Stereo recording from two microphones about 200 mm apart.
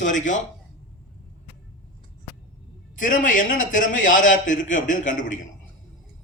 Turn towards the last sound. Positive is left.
turn(degrees=40)  # may be behind; listen again after turning